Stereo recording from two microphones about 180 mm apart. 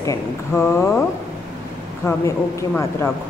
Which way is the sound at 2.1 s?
15° left (ahead or behind).